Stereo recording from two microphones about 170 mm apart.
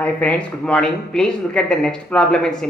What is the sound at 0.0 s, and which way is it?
A woman's voice, 10° left (ahead or behind).